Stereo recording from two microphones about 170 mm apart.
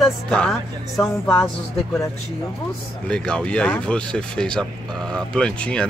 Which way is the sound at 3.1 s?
5° left (ahead or behind).